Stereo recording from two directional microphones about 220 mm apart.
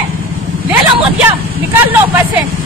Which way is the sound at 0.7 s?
5° right (ahead or behind).